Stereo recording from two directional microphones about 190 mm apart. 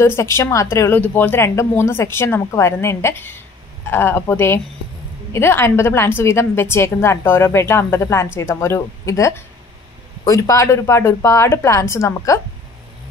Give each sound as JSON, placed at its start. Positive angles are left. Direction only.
{"t": 0.0, "sound": "a woman's voice", "side_deg": 15}